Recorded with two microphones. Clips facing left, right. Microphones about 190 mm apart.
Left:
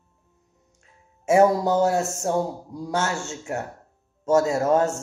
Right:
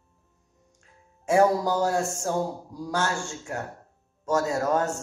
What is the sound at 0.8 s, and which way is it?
A man's voice, 20° left (ahead or behind).